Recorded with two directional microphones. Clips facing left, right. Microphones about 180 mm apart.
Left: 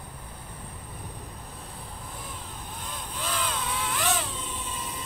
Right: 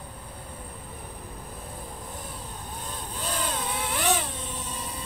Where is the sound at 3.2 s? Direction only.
50° right (ahead or behind).